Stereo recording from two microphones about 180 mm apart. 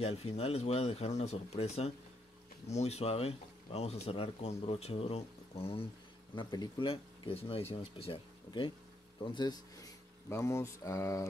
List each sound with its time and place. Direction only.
0.0 s speech: 35° left (ahead or behind); by 11.2 s 15° left (ahead or behind)